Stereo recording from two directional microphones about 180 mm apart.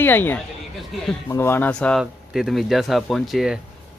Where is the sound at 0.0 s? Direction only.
10° left (ahead or behind).